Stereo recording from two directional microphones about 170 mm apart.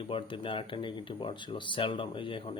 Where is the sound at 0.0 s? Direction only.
30° left (ahead or behind).